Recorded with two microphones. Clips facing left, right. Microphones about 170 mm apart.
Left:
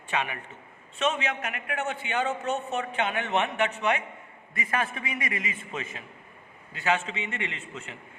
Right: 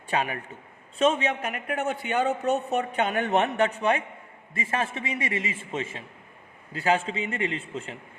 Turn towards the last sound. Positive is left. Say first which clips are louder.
# right 7 dB
turn(degrees=-35)  # may be behind; listen again after turning